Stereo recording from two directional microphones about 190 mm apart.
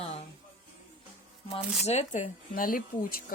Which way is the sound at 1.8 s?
40° left (ahead or behind).